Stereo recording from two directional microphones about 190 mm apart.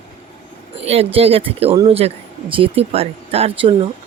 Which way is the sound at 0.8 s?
30° right (ahead or behind).